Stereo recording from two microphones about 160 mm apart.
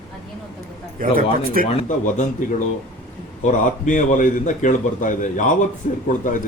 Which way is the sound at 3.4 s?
50° left (ahead or behind).